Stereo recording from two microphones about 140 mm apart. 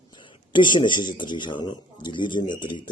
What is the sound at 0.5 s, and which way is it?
A man's voice, 35° left (ahead or behind).